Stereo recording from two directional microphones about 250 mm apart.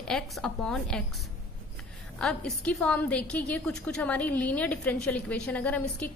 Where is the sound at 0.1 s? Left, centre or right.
Centre.